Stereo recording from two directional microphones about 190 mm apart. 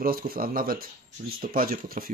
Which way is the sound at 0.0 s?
50° right (ahead or behind).